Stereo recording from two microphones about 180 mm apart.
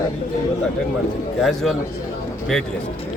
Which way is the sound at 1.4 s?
Centre (ahead or behind).